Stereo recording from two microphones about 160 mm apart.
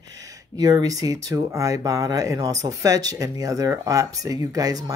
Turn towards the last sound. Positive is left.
turn(degrees=-25)  # may be behind; listen again after turning